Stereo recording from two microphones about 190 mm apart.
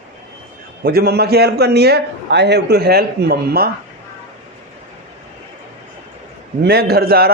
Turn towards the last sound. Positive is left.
turn(degrees=-55)  # may be behind; listen again after turning